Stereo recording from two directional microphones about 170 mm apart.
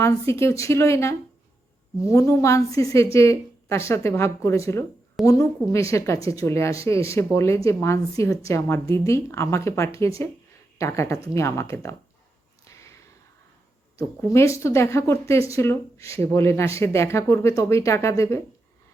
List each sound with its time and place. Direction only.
0.0 s speech: 15° left (ahead or behind)
14.2 s speech: 15° left (ahead or behind)